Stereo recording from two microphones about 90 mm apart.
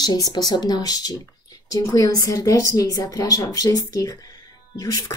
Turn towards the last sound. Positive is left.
turn(degrees=40)  # may be behind; listen again after turning